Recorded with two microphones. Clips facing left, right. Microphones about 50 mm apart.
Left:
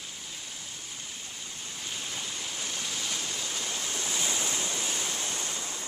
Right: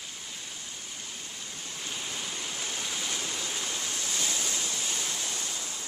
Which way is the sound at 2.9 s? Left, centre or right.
Centre.